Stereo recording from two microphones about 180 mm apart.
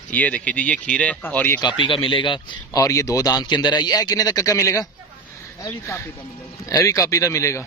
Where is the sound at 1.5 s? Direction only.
25° left (ahead or behind).